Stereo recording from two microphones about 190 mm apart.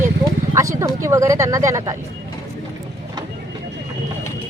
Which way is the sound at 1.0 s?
15° right (ahead or behind).